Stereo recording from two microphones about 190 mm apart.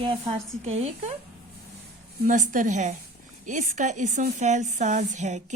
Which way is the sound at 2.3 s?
45° right (ahead or behind).